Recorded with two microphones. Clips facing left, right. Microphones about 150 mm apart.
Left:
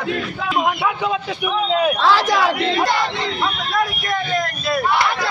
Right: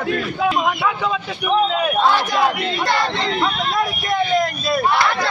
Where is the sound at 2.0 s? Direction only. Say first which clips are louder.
Left 1 dB; 90° left.